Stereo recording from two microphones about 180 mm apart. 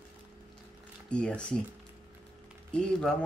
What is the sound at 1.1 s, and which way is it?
Speech, 5° left (ahead or behind).